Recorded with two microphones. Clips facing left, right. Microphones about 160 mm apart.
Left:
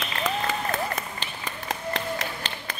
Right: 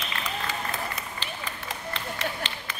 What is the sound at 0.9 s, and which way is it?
Clapping, 45° left (ahead or behind).